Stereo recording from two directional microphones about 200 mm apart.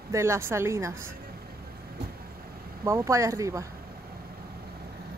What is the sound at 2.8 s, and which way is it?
Speech, 15° right (ahead or behind).